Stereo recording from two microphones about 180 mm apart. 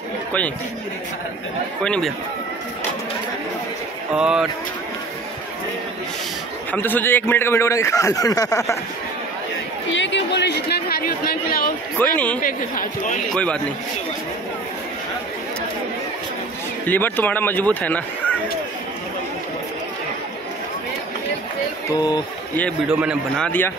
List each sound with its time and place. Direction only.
1.8 s a man's voice: 5° left (ahead or behind)
4.1 s a man's voice: 5° right (ahead or behind)
6.7 s a man's voice: 10° left (ahead or behind)
9.8 s chatter: 90° left; by 11.7 s 55° left (ahead or behind)
12.0 s a man's voice: 10° left (ahead or behind)
12.4 s speech: 50° left (ahead or behind)
13.3 s a man's voice: 5° left (ahead or behind)
16.8 s a man's voice: 10° left (ahead or behind)
21.9 s speech: 20° left (ahead or behind)
22.8 s a man's voice: 5° right (ahead or behind)
23.4 s a man's voice: 10° left (ahead or behind)